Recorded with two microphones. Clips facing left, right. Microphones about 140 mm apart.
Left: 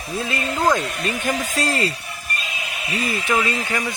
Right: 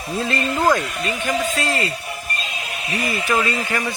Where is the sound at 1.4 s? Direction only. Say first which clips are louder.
Even; 40° left (ahead or behind).